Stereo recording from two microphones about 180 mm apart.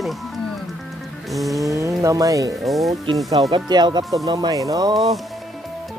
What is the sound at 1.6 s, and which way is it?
Music, 15° right (ahead or behind).